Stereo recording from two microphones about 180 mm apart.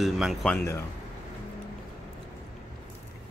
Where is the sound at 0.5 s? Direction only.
15° left (ahead or behind).